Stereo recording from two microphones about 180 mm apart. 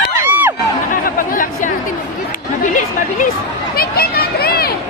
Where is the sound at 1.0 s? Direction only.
50° left (ahead or behind).